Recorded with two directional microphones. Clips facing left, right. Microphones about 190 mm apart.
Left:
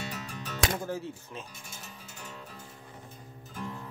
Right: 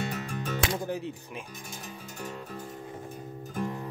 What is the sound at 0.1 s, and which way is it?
Music, 50° right (ahead or behind).